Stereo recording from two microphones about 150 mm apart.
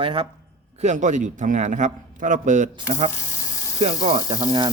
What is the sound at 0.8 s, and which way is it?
A man's voice, 55° right (ahead or behind).